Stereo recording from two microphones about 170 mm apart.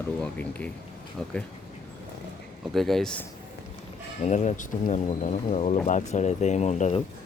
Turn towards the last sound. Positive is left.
turn(degrees=40)  # may be behind; listen again after turning